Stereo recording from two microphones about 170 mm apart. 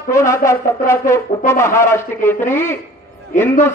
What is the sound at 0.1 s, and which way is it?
A man's voice, 15° left (ahead or behind).